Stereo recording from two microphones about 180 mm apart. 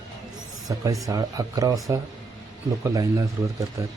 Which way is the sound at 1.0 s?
20° right (ahead or behind).